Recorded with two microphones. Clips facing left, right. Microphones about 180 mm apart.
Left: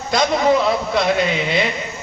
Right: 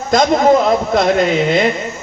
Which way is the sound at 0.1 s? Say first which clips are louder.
Right 5 dB; 45° right (ahead or behind).